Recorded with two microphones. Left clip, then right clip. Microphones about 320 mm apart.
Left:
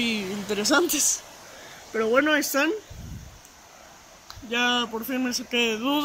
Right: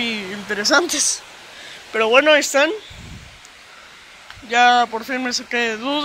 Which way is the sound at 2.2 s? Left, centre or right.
Centre.